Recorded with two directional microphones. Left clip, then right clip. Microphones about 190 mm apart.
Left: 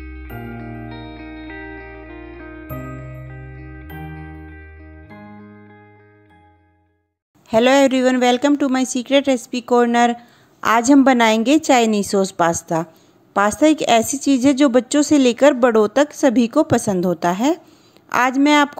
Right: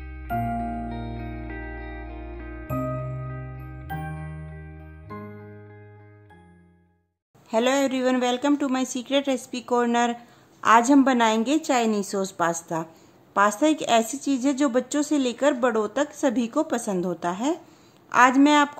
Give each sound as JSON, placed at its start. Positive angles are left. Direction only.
{"t": 0.0, "sound": "music", "side_deg": -5}
{"t": 7.4, "sound": "a woman's voice", "side_deg": 30}